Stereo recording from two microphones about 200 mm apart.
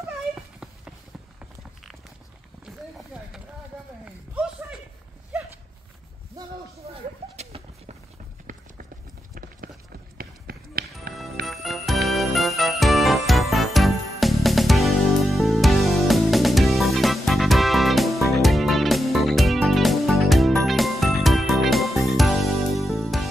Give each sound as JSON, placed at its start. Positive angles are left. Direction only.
{"t": 0.0, "sound": "cat", "side_deg": -5}
{"t": 4.0, "sound": "a sound", "side_deg": -5}
{"t": 10.1, "sound": "run", "side_deg": -50}
{"t": 11.4, "sound": "music", "side_deg": 0}